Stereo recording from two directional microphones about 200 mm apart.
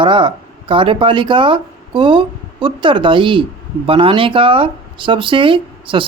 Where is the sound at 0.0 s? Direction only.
25° right (ahead or behind).